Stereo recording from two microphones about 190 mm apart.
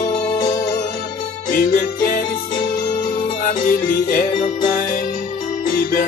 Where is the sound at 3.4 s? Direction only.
45° left (ahead or behind).